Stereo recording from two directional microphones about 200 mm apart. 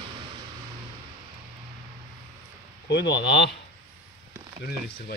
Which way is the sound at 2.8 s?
60° left (ahead or behind).